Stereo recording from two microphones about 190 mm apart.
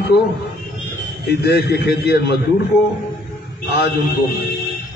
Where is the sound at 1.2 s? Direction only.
55° left (ahead or behind).